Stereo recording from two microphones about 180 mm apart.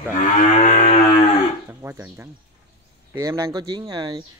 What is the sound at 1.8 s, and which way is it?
Speech, 10° right (ahead or behind).